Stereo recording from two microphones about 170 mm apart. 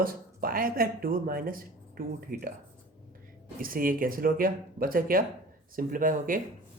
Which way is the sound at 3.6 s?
55° right (ahead or behind).